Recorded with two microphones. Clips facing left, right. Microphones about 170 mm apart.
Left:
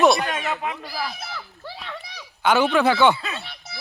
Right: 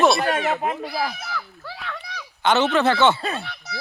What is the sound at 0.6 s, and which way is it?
Speech, 40° right (ahead or behind).